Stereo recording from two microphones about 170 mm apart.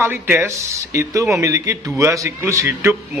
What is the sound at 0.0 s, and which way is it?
A man's voice, 15° right (ahead or behind).